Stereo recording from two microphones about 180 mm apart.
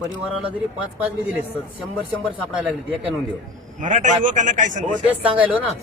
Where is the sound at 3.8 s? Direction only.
40° right (ahead or behind).